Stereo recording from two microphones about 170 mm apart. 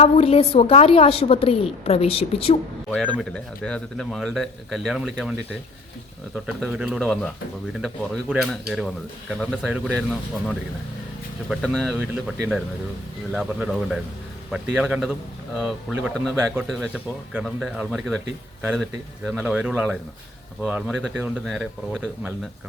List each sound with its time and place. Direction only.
0.0 s a woman's voice: 35° left (ahead or behind)
2.9 s speech: 5° left (ahead or behind)
6.3 s speech: 5° right (ahead or behind)
13.3 s speech: 5° right (ahead or behind)